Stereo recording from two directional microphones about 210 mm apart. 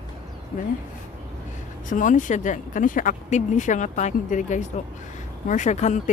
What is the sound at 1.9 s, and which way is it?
Speech, 40° left (ahead or behind).